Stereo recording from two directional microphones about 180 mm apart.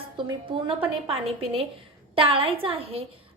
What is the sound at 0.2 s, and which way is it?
Speech, 25° right (ahead or behind).